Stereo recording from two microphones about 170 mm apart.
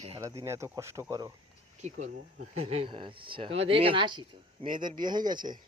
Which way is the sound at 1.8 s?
45° right (ahead or behind).